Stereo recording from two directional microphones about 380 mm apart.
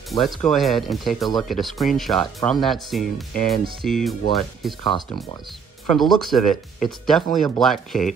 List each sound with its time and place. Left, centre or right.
0.1 s speech: centre
4.8 s speech: centre
5.9 s speech: centre